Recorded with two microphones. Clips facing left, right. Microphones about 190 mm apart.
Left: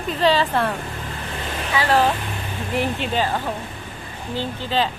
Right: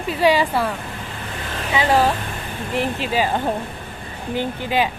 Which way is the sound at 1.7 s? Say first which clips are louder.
Right 1 dB; 15° right (ahead or behind).